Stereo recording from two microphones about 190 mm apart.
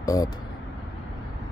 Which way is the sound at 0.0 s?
15° left (ahead or behind).